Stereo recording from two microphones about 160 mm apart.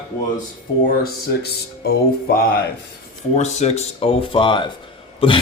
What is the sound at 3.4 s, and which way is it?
Speech, 45° left (ahead or behind).